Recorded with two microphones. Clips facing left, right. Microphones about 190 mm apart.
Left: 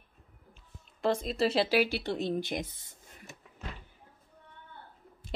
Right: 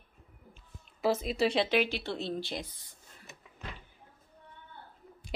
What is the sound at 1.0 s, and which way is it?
Speech, 5° right (ahead or behind).